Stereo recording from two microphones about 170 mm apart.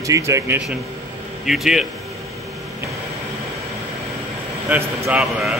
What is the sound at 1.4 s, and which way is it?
Speech, centre (ahead or behind).